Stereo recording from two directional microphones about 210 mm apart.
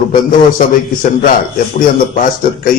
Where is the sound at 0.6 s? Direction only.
40° left (ahead or behind).